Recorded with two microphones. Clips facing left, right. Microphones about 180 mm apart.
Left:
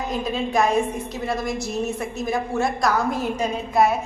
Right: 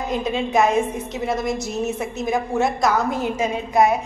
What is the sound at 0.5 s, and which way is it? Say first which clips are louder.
A woman's voice: right 2 dB; 20° right (ahead or behind).